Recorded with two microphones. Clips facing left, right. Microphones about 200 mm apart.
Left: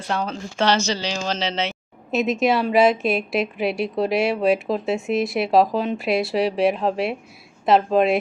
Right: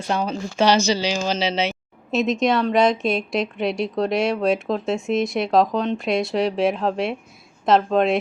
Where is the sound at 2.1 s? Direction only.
Centre (ahead or behind).